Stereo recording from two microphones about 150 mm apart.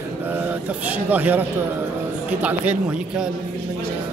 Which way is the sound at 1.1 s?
10° right (ahead or behind).